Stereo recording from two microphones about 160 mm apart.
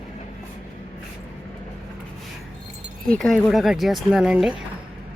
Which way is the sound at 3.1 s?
5° left (ahead or behind).